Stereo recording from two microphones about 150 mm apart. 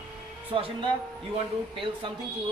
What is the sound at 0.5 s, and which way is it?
Speech, 35° right (ahead or behind).